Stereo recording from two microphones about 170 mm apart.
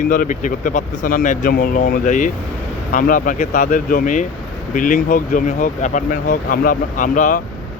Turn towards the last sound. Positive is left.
turn(degrees=50)  # may be behind; listen again after turning